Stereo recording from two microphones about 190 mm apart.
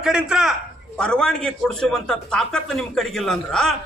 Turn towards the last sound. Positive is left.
turn(degrees=0)  # may be behind; listen again after turning